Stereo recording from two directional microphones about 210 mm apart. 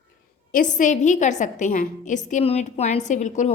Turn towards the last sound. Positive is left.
turn(degrees=35)  # may be behind; listen again after turning